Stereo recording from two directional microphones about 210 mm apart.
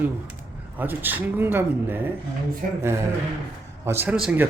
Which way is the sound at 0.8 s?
10° right (ahead or behind).